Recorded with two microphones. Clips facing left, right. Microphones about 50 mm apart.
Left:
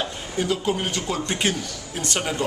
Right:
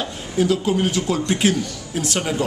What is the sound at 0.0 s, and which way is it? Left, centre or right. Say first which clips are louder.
Speech: right 5 dB; centre.